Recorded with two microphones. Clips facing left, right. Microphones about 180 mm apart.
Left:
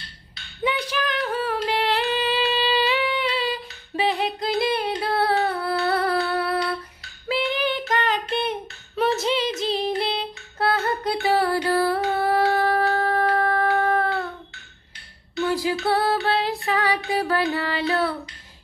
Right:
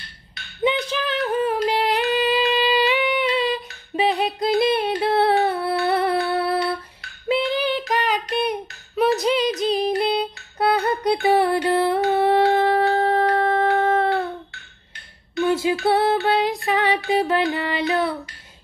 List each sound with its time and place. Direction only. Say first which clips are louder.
0.7 s a sound: right 3 dB; 25° right (ahead or behind)
2.1 s humming: right 4 dB; 15° right (ahead or behind)
3.9 s music: right 3 dB; 20° right (ahead or behind)
5.0 s a sound: right 4 dB; 25° right (ahead or behind)
7.5 s child singing: right 3 dB; 20° left (ahead or behind)
7.9 s a sound: right 1 dB; 15° right (ahead or behind)
9.8 s music: right 4 dB; 20° right (ahead or behind)
15.4 s music: right 3 dB; 20° right (ahead or behind)
15.8 s female singing: right 3 dB; 20° right (ahead or behind)
17.1 s music: right 4 dB; 25° right (ahead or behind)